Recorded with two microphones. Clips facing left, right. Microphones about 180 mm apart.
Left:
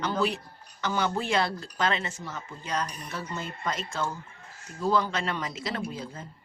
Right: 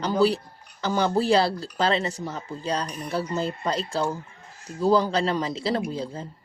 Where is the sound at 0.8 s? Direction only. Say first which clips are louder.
Right 6 dB; 35° right (ahead or behind).